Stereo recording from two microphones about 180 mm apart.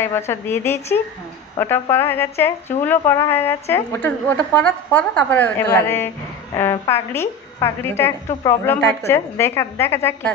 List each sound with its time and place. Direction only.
0.0 s a woman's voice: 15° left (ahead or behind)